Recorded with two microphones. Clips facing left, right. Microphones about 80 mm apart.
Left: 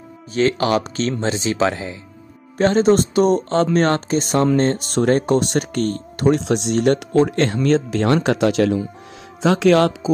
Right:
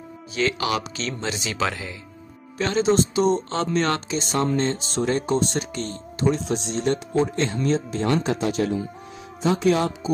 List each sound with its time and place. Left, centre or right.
0.3 s speech: left
2.5 s speech: left